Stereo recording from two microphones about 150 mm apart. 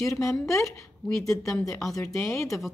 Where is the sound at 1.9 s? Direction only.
20° left (ahead or behind).